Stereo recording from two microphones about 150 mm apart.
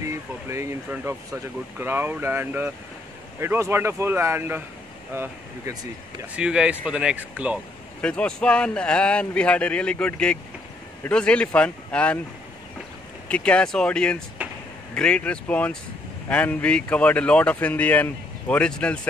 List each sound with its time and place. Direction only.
0.0 s speech: 20° right (ahead or behind)
6.3 s speech: 5° right (ahead or behind)
8.0 s speech: 5° left (ahead or behind)
13.3 s speech: 10° left (ahead or behind)
14.4 s a sound: 10° right (ahead or behind)
15.0 s speech: 5° left (ahead or behind)